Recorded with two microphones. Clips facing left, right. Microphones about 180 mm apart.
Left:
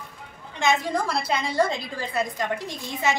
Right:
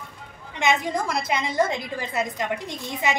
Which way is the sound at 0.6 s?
20° right (ahead or behind).